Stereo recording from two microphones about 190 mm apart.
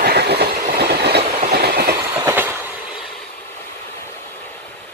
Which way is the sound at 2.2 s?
10° right (ahead or behind).